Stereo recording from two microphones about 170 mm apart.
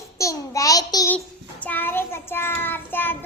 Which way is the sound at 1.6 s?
10° left (ahead or behind).